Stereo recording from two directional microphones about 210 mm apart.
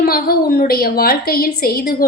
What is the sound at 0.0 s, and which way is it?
A woman's voice, 45° left (ahead or behind).